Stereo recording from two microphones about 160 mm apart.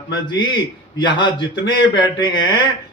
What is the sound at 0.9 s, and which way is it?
Speech, 30° left (ahead or behind).